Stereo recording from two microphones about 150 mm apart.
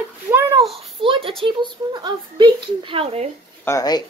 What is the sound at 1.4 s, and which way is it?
A woman's voice, 35° right (ahead or behind).